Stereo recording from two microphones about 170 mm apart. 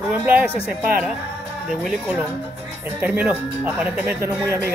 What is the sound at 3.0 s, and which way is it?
Speech, 10° right (ahead or behind).